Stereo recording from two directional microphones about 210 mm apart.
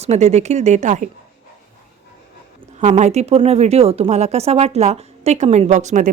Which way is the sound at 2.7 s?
35° right (ahead or behind).